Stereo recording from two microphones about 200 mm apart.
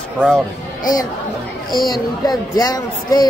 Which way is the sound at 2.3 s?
20° left (ahead or behind).